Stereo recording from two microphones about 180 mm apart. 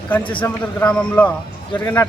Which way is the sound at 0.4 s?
10° left (ahead or behind).